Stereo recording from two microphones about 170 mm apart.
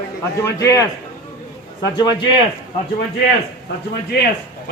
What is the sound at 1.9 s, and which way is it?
Speech, 25° left (ahead or behind).